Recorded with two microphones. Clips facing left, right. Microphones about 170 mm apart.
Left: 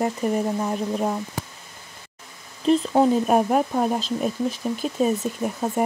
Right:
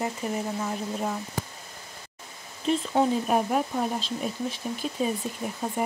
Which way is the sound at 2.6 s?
45° left (ahead or behind).